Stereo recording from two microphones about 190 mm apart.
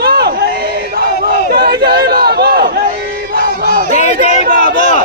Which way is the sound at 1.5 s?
50° right (ahead or behind).